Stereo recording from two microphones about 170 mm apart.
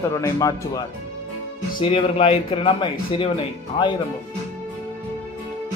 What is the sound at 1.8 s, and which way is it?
A man's voice, 30° left (ahead or behind).